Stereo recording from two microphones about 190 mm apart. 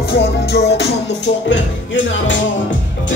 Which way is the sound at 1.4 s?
75° left (ahead or behind).